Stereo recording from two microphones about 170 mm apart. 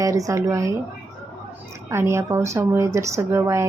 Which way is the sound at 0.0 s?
20° right (ahead or behind).